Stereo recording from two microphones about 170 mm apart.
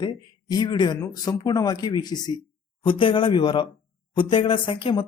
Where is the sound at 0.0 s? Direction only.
25° left (ahead or behind).